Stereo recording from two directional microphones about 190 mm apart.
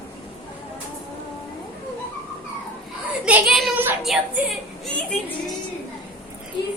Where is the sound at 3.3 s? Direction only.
5° right (ahead or behind).